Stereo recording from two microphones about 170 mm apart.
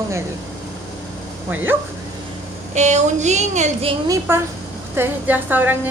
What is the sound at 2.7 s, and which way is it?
Speech, 45° right (ahead or behind).